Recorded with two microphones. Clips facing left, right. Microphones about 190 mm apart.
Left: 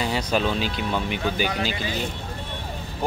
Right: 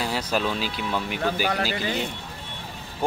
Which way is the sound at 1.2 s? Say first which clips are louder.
Even; 40° right (ahead or behind).